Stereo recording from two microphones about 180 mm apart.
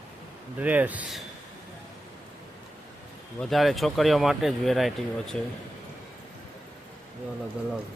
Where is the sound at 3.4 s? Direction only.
Centre (ahead or behind).